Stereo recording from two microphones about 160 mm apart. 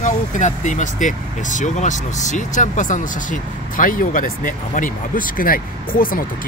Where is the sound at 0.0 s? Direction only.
50° left (ahead or behind).